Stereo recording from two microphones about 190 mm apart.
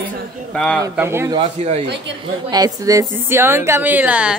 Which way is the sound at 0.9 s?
15° right (ahead or behind).